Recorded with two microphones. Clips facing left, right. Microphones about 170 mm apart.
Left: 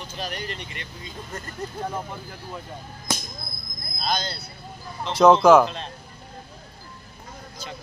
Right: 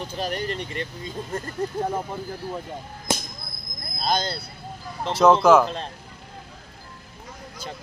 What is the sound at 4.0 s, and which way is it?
Speech, 50° right (ahead or behind).